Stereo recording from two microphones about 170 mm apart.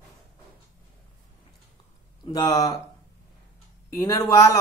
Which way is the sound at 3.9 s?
20° left (ahead or behind).